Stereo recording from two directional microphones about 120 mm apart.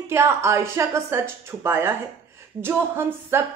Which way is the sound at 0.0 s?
20° right (ahead or behind).